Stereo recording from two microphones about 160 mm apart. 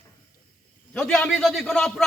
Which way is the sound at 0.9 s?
5° left (ahead or behind).